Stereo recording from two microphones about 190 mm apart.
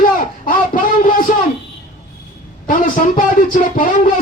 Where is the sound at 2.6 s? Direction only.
45° left (ahead or behind).